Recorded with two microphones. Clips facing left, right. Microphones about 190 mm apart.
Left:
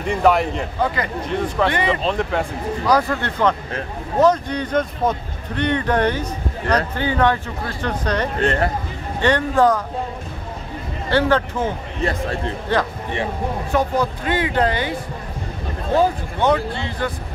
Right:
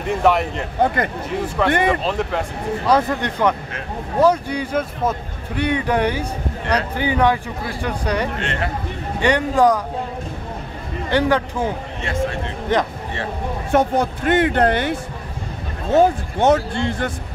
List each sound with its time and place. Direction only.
0.0 s speech: centre (ahead or behind)
0.8 s speech: 55° right (ahead or behind)
1.3 s speech: 5° right (ahead or behind)
2.9 s speech: 20° right (ahead or behind)
8.4 s speech: 40° left (ahead or behind)
9.2 s speech: 15° right (ahead or behind)
11.1 s speech: 15° right (ahead or behind)
12.0 s speech: 35° left (ahead or behind)
13.7 s speech: 50° right (ahead or behind)
16.0 s speech: 45° right (ahead or behind)